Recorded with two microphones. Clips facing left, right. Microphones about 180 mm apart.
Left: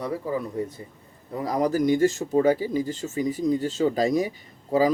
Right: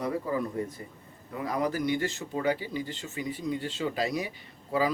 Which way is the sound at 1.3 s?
35° left (ahead or behind).